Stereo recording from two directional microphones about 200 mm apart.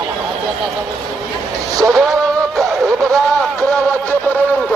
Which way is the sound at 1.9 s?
Centre (ahead or behind).